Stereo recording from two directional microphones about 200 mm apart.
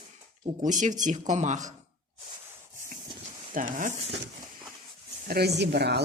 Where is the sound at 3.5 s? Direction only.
40° right (ahead or behind).